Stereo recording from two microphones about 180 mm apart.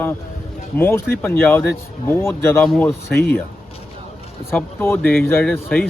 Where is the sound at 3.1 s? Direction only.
60° left (ahead or behind).